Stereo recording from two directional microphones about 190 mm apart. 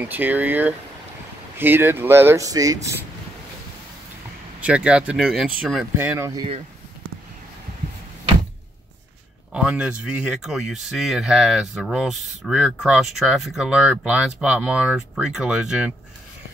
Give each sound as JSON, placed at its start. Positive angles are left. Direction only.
{"t": 0.1, "sound": "speech", "side_deg": -10}
{"t": 4.6, "sound": "speech", "side_deg": -5}
{"t": 5.9, "sound": "speech", "side_deg": -15}
{"t": 9.5, "sound": "speech", "side_deg": -5}